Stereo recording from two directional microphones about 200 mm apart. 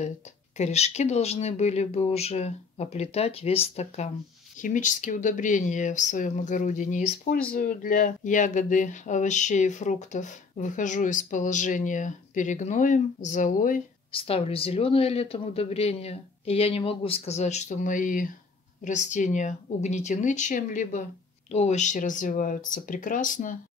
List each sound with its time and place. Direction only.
0.6 s speech: 35° left (ahead or behind)
14.1 s speech: 30° left (ahead or behind)